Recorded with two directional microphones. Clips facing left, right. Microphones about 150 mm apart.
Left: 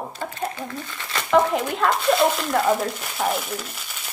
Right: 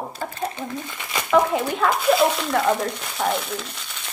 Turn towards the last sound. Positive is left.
turn(degrees=5)  # may be behind; listen again after turning